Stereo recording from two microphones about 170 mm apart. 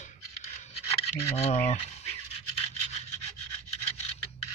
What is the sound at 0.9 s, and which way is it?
Speech, 35° left (ahead or behind).